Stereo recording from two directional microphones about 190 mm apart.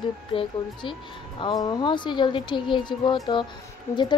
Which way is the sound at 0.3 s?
30° left (ahead or behind).